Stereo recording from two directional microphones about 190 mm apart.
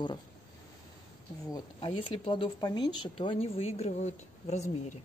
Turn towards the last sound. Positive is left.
turn(degrees=40)  # may be behind; listen again after turning